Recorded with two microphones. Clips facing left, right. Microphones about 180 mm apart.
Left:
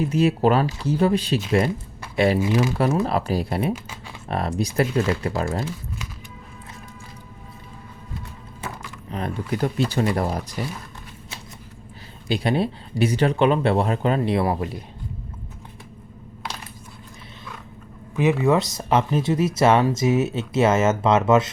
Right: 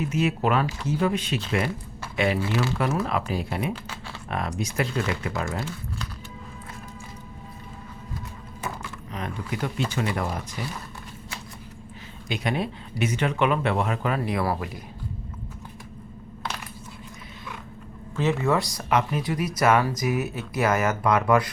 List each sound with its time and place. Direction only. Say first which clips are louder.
0.0 s speech: left 5 dB; 35° left (ahead or behind)
2.4 s speech: left 5 dB; 15° left (ahead or behind)
3.0 s speech: left 4 dB; 35° left (ahead or behind)
9.1 s speech: left 5 dB; 35° left (ahead or behind)
12.3 s speech: left 5 dB; 30° left (ahead or behind)
18.2 s speech: left 4 dB; 15° left (ahead or behind)